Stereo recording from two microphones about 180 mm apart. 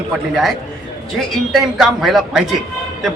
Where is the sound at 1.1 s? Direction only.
Centre (ahead or behind).